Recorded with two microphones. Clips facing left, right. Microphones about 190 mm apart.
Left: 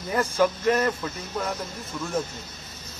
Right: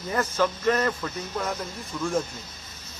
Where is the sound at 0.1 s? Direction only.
10° left (ahead or behind).